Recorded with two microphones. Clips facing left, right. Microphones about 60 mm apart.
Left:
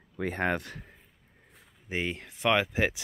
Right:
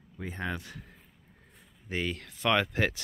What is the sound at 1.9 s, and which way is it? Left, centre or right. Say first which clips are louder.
Speech: left 1 dB; centre.